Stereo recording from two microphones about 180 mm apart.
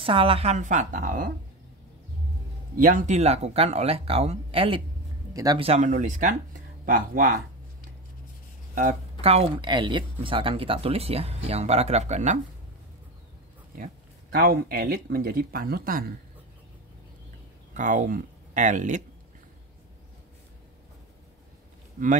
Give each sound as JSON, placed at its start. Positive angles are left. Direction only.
{"t": 0.0, "sound": "speech", "side_deg": -30}
{"t": 2.8, "sound": "speech", "side_deg": -45}
{"t": 5.3, "sound": "speech", "side_deg": -20}
{"t": 5.6, "sound": "speech", "side_deg": -40}
{"t": 9.2, "sound": "speech", "side_deg": -35}
{"t": 14.4, "sound": "speech", "side_deg": -60}
{"t": 17.7, "sound": "speech", "side_deg": -45}
{"t": 22.0, "sound": "speech", "side_deg": -45}